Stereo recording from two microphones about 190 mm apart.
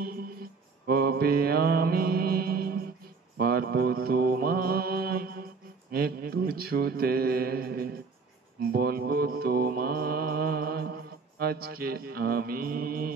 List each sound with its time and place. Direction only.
0.8 s mantra: 55° right (ahead or behind)